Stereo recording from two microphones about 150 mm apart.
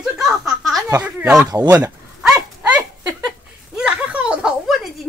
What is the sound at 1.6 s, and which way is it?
Speech, 20° right (ahead or behind).